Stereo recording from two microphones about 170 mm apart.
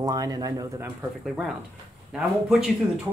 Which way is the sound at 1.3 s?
Centre (ahead or behind).